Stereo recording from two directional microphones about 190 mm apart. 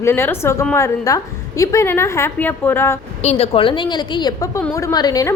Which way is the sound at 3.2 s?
35° left (ahead or behind).